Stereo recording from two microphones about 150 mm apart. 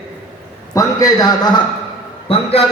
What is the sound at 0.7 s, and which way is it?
Speech, 25° left (ahead or behind).